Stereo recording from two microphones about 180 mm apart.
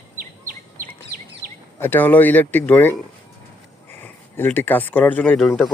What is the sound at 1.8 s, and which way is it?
Speech, 10° left (ahead or behind).